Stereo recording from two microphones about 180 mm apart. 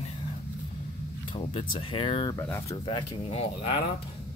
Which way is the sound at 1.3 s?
30° left (ahead or behind).